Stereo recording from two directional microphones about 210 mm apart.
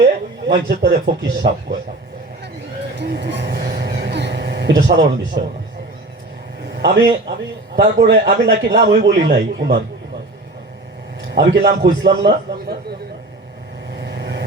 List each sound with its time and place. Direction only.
0.0 s speech: 55° right (ahead or behind)
3.0 s a sound: 55° right (ahead or behind)
7.8 s a man's voice: 45° right (ahead or behind)
11.3 s a man's voice: 45° right (ahead or behind)
14.0 s vehicle: 55° right (ahead or behind)